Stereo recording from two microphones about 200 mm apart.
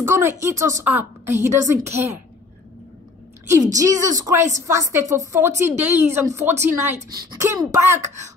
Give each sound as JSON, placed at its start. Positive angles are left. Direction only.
{"t": 0.0, "sound": "a woman's voice", "side_deg": -10}
{"t": 3.7, "sound": "a woman's voice", "side_deg": -15}